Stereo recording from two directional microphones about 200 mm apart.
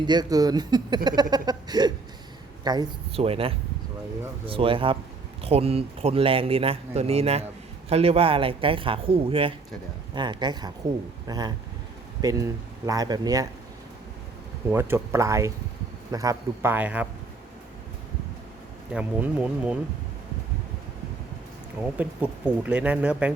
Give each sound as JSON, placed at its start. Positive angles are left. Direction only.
{"t": 0.0, "sound": "a man's voice", "side_deg": -20}
{"t": 14.7, "sound": "speech", "side_deg": -10}
{"t": 18.9, "sound": "speech", "side_deg": -5}
{"t": 21.9, "sound": "speech", "side_deg": -5}